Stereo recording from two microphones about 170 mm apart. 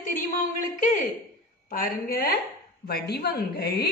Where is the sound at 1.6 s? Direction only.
60° left (ahead or behind).